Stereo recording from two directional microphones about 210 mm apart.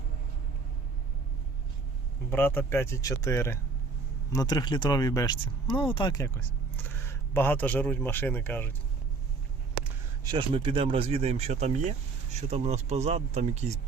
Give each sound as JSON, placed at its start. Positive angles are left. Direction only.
{"t": 2.3, "sound": "speech", "side_deg": 10}
{"t": 10.2, "sound": "speech", "side_deg": -25}